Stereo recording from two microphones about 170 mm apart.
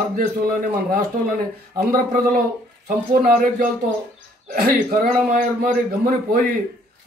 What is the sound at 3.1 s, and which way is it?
Speech, 55° right (ahead or behind).